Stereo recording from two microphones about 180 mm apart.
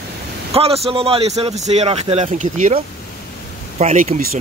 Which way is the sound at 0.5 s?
35° right (ahead or behind).